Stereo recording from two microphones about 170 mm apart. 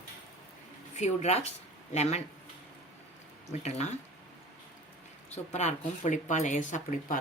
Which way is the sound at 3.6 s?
40° left (ahead or behind).